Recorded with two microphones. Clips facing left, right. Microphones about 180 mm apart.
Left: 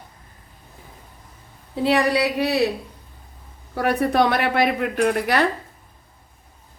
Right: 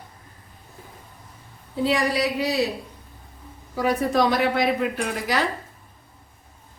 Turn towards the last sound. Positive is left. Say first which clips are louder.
# left 6 dB
turn(degrees=60)  # may be behind; listen again after turning